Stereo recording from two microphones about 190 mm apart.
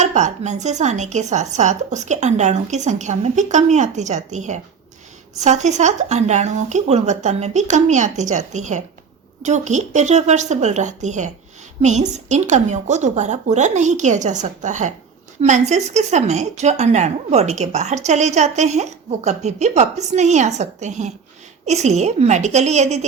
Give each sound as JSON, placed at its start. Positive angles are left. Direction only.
{"t": 0.0, "sound": "speech", "side_deg": -40}